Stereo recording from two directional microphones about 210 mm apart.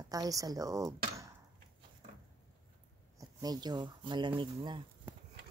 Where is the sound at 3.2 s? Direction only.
20° right (ahead or behind).